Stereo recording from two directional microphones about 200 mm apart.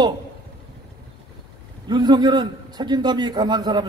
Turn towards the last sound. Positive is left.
turn(degrees=-20)  # may be behind; listen again after turning